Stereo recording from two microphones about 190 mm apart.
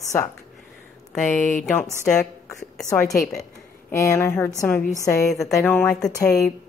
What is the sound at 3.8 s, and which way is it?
A woman's voice, 15° left (ahead or behind).